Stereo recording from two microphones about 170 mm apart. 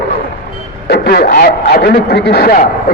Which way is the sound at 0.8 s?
65° left (ahead or behind).